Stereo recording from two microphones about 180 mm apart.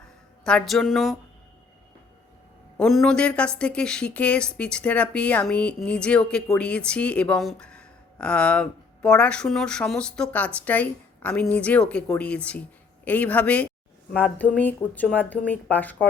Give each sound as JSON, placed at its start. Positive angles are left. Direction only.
{"t": 0.4, "sound": "a woman's voice", "side_deg": 5}
{"t": 2.7, "sound": "a woman's voice", "side_deg": 5}